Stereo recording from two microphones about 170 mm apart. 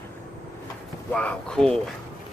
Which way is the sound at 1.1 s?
5° left (ahead or behind).